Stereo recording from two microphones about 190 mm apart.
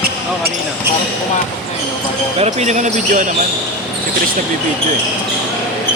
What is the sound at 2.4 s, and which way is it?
Speech, 35° right (ahead or behind).